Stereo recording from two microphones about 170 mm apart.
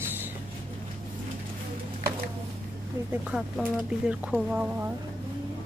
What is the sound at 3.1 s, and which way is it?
Speech, 5° right (ahead or behind).